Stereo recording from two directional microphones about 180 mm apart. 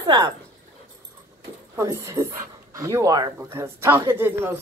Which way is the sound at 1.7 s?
15° right (ahead or behind).